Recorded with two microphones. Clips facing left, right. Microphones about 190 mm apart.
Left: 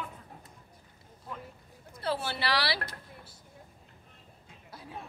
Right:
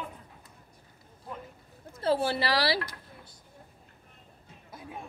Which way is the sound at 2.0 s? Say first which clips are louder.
Right 6 dB; 30° right (ahead or behind).